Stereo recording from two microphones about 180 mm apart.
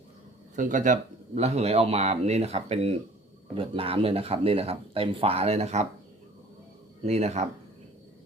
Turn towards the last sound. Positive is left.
turn(degrees=-40)  # may be behind; listen again after turning